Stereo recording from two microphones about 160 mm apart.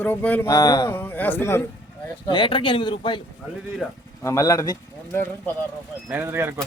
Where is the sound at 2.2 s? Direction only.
30° left (ahead or behind).